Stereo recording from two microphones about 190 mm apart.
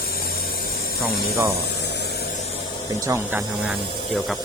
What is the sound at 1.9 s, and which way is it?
Spray, 60° left (ahead or behind).